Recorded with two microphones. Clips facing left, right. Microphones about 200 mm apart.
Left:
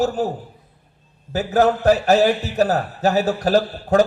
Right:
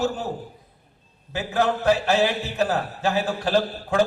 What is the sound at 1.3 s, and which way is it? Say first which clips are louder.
A man's voice: left 6 dB; 40° left (ahead or behind).